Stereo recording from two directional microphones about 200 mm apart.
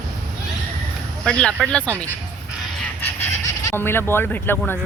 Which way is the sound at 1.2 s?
5° left (ahead or behind).